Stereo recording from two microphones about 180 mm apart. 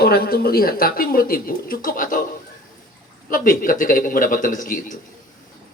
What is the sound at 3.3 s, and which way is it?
A man's voice, 50° left (ahead or behind).